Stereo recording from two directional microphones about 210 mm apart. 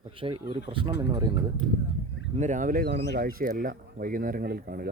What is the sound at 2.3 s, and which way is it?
Speech, 35° right (ahead or behind).